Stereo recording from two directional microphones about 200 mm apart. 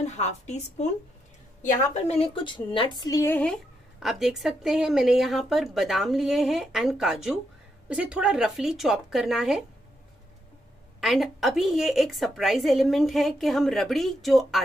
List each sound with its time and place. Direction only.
0.0 s a woman's voice: 35° left (ahead or behind); by 3.5 s 10° left (ahead or behind)
4.0 s a woman's voice: centre (ahead or behind)
11.0 s a woman's voice: centre (ahead or behind)